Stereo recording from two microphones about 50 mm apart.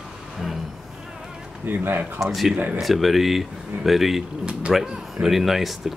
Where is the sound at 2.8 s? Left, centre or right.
Centre.